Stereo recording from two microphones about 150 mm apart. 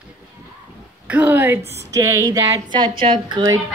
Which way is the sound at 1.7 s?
20° right (ahead or behind).